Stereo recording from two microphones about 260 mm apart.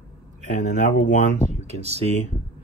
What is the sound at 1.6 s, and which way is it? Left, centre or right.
Speech, right.